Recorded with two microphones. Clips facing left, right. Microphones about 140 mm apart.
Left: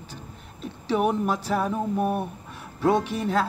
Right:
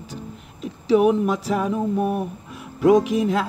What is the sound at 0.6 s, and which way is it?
Speech, 35° left (ahead or behind).